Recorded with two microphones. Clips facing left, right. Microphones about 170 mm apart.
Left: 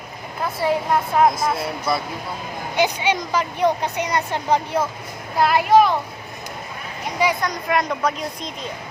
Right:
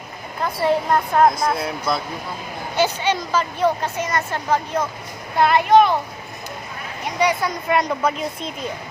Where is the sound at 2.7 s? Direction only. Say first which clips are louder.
Even; 15° left (ahead or behind).